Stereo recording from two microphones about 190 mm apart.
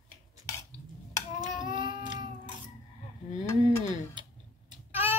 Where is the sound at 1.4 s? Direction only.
25° right (ahead or behind).